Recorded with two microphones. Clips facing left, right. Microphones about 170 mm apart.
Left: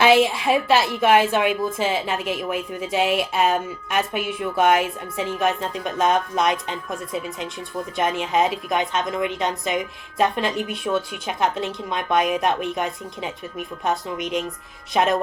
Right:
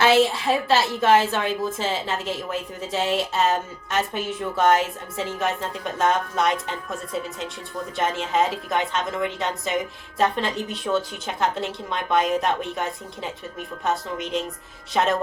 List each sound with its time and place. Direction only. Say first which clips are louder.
0.0 s a woman's voice: left 2 dB; 15° left (ahead or behind)